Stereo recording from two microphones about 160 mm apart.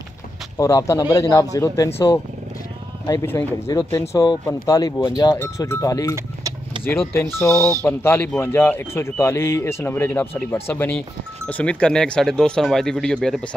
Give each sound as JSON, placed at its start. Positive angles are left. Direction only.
{"t": 0.6, "sound": "cowbell", "side_deg": 20}
{"t": 3.1, "sound": "cowbell", "side_deg": 20}
{"t": 7.2, "sound": "speech", "side_deg": 15}